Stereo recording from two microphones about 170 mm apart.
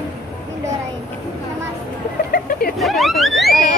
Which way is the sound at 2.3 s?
60° left (ahead or behind).